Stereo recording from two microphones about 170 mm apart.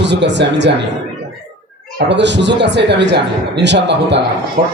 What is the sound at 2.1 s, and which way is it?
Speech, 90° right.